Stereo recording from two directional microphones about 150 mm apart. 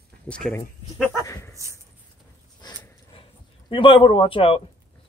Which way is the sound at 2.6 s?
35° left (ahead or behind).